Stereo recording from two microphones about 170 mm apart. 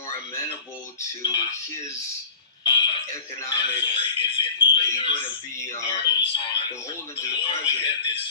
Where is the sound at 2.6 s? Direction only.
30° left (ahead or behind).